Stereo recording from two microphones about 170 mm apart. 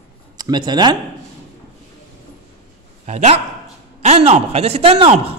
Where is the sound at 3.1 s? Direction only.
40° right (ahead or behind).